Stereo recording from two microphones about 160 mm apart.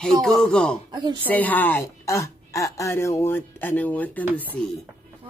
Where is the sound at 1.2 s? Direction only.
10° left (ahead or behind).